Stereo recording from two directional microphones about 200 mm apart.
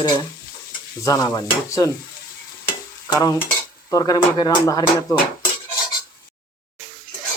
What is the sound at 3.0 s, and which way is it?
Speech, 15° left (ahead or behind).